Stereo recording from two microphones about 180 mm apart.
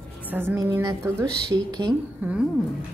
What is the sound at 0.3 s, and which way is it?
A woman's voice, 10° right (ahead or behind).